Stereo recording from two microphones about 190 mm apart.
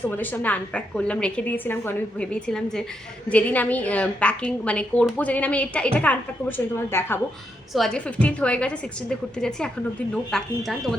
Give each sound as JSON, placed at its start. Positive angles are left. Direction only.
{"t": 0.0, "sound": "a woman's voice", "side_deg": 10}
{"t": 7.7, "sound": "a woman's voice", "side_deg": 0}